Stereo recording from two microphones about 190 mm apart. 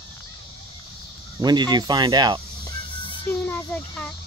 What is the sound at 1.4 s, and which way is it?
Speech, 20° right (ahead or behind).